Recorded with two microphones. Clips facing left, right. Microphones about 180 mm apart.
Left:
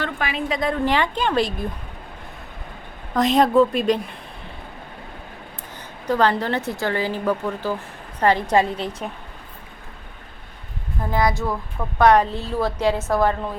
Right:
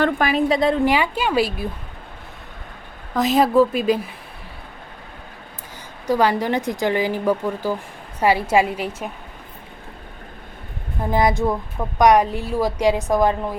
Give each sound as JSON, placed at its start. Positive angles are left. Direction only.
{"t": 0.0, "sound": "a woman's voice", "side_deg": -40}
{"t": 0.9, "sound": "speech", "side_deg": -10}
{"t": 3.2, "sound": "speech", "side_deg": -5}
{"t": 6.1, "sound": "speech", "side_deg": -10}
{"t": 11.0, "sound": "speech", "side_deg": -20}